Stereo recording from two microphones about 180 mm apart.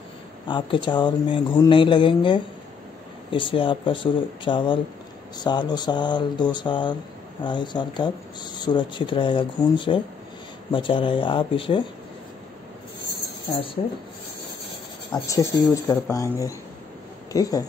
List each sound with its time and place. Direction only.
0.5 s speech: 25° left (ahead or behind)
15.2 s speech: 20° left (ahead or behind)